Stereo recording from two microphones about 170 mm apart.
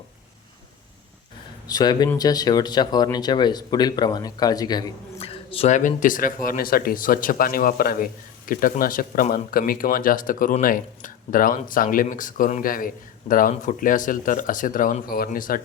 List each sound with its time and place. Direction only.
1.6 s speech: 25° left (ahead or behind)
5.2 s speech: 35° left (ahead or behind); by 15.6 s 55° left (ahead or behind)